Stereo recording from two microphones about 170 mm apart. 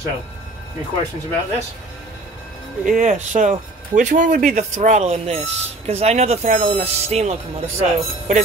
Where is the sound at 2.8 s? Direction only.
50° right (ahead or behind).